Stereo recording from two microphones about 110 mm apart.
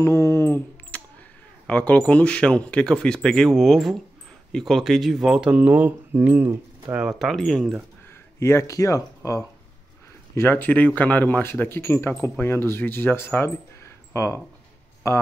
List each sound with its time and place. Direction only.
0.0 s speech: 25° left (ahead or behind)
0.9 s a sound: 15° left (ahead or behind)
1.7 s speech: 10° left (ahead or behind); by 7.0 s 20° right (ahead or behind)
7.0 s speech: 5° right (ahead or behind)
8.1 s speech: 25° left (ahead or behind)